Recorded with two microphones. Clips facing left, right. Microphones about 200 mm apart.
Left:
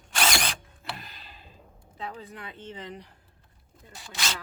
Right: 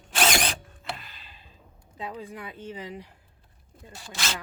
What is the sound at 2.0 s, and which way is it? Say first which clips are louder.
Speech: right 2 dB; 15° right (ahead or behind).